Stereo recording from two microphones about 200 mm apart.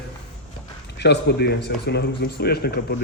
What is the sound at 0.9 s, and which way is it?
A man's voice, 55° left (ahead or behind).